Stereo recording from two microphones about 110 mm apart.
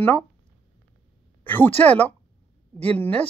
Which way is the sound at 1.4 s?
15° left (ahead or behind).